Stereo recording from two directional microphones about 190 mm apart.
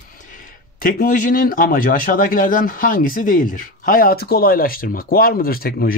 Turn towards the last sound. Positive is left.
turn(degrees=50)  # may be behind; listen again after turning